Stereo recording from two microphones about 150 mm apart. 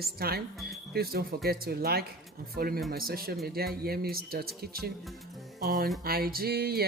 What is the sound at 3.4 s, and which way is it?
Music, 90° right.